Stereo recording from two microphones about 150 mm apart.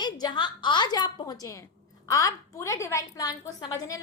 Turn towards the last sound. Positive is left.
turn(degrees=25)  # may be behind; listen again after turning